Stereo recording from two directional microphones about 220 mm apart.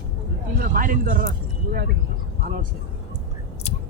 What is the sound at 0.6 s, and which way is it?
Speech, 40° right (ahead or behind).